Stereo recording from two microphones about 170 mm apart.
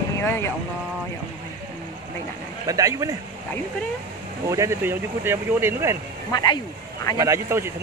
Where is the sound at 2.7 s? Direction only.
20° right (ahead or behind).